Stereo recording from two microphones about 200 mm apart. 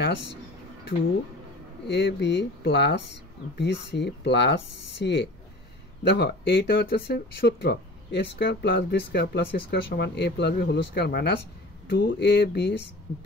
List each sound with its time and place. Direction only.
1.9 s speech: 60° left (ahead or behind)